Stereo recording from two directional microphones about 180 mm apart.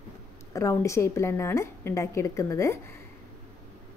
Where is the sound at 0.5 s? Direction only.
15° left (ahead or behind).